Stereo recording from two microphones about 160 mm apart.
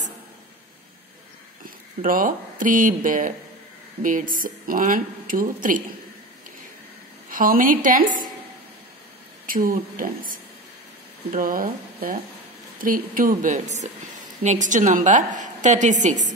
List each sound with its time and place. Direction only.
2.0 s a woman's voice: 60° right (ahead or behind)
7.2 s a woman's voice: 60° right (ahead or behind)
9.5 s a woman's voice: 60° right (ahead or behind)
11.3 s a woman's voice: 60° right (ahead or behind)